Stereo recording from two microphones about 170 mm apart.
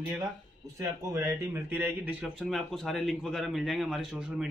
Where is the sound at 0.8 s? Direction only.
20° right (ahead or behind).